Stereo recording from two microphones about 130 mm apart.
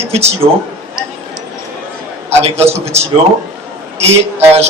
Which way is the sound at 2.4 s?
50° right (ahead or behind).